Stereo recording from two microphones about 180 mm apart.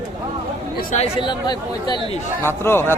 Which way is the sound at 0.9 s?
30° left (ahead or behind).